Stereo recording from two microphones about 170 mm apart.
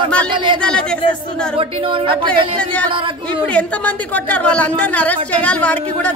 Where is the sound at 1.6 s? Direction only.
30° right (ahead or behind).